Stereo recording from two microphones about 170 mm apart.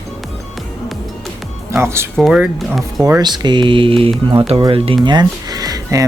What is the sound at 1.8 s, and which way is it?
Speech, 15° right (ahead or behind).